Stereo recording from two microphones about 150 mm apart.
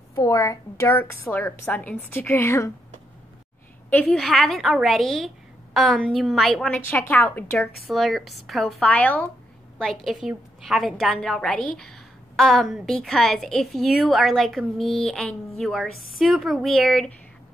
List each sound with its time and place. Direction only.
0.1 s a woman's voice: 20° left (ahead or behind)
3.9 s a woman's voice: 5° left (ahead or behind)
7.5 s a woman's voice: centre (ahead or behind)